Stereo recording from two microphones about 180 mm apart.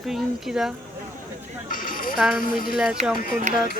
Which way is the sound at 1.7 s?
50° left (ahead or behind).